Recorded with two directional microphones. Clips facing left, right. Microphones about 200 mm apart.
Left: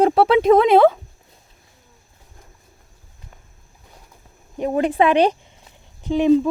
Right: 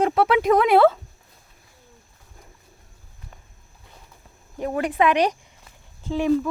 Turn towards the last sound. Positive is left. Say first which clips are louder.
# left 6 dB
turn(degrees=20)  # may be behind; listen again after turning